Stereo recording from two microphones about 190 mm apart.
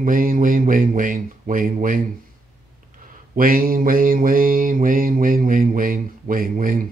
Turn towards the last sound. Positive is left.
turn(degrees=-45)  # may be behind; listen again after turning